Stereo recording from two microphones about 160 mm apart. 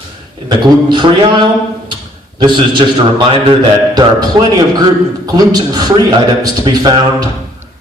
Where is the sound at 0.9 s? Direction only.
30° right (ahead or behind).